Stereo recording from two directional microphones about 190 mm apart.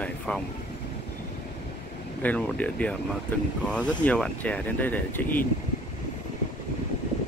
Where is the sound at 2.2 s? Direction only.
5° left (ahead or behind).